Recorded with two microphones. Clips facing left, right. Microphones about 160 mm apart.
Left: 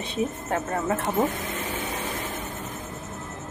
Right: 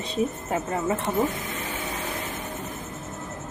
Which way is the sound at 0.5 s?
5° right (ahead or behind).